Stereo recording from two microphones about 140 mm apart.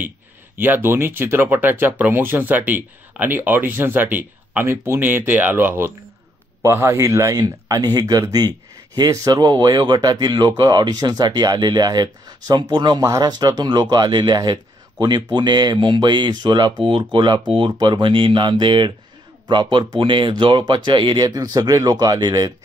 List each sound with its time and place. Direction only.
0.6 s speech: 15° right (ahead or behind)